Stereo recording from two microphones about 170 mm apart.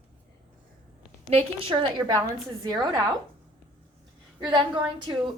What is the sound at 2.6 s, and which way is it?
Speech, 25° right (ahead or behind).